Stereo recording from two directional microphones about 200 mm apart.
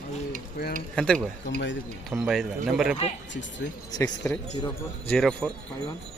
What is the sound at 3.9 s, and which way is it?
Speech, 10° left (ahead or behind).